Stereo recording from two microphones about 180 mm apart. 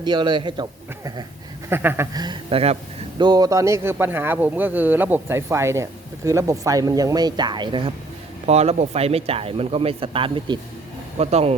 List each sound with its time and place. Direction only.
0.0 s a man's voice: 25° right (ahead or behind)
1.7 s a man's voice: 10° right (ahead or behind)
2.1 s a man's voice: 25° right (ahead or behind)